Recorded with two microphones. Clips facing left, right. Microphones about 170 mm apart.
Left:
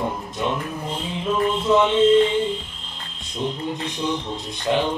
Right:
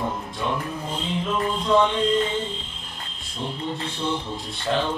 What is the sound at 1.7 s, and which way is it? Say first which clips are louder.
Speech: left 3 dB; 20° left (ahead or behind).